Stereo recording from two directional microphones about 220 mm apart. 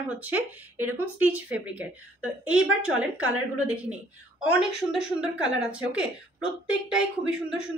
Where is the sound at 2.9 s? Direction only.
5° right (ahead or behind).